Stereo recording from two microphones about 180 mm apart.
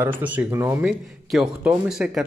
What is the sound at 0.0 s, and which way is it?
Speech, 10° right (ahead or behind).